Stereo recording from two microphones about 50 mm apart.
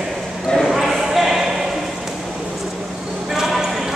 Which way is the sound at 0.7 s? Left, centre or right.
Centre.